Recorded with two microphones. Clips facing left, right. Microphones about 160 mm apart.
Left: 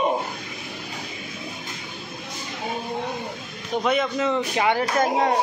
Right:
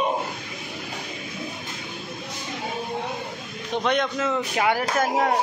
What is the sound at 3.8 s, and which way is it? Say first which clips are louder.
Speech: left 1 dB; 5° left (ahead or behind).